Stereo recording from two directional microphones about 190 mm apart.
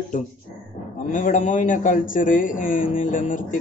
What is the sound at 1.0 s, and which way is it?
A man's voice, 45° left (ahead or behind).